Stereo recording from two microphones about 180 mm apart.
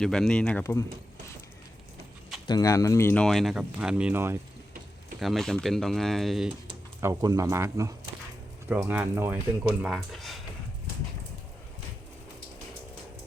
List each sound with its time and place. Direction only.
0.0 s speech: 5° left (ahead or behind)
2.5 s speech: 20° left (ahead or behind)
3.2 s speech: centre (ahead or behind)
5.2 s speech: centre (ahead or behind)
7.0 s speech: 20° right (ahead or behind); by 10.4 s centre (ahead or behind)